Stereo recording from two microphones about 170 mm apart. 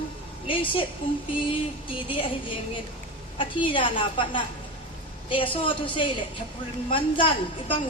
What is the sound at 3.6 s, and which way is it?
A woman's voice, 30° left (ahead or behind).